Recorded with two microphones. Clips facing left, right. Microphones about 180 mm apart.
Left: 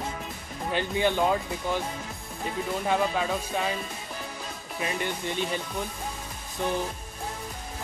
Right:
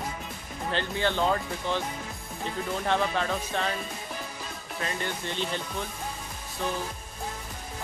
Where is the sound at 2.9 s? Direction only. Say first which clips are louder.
Left 1 dB; 10° left (ahead or behind).